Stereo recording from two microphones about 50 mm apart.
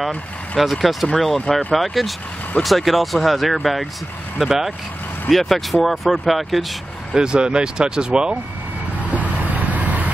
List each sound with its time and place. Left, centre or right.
0.6 s speech: centre
7.2 s speech: centre
9.1 s vehicle: right